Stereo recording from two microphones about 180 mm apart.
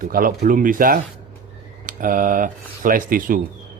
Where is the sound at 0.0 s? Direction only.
50° right (ahead or behind).